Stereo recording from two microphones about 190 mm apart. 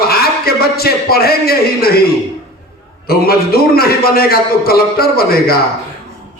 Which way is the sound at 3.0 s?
55° left (ahead or behind).